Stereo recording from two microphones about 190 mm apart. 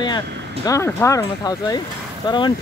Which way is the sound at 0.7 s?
15° left (ahead or behind).